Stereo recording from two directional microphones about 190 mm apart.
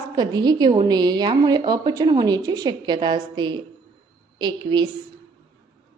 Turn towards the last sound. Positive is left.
turn(degrees=-25)  # may be behind; listen again after turning